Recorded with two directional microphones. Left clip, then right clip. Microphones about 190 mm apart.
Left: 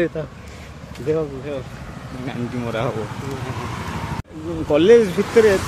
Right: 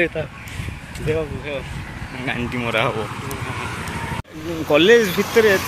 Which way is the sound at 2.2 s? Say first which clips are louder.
Right 4 dB; centre (ahead or behind).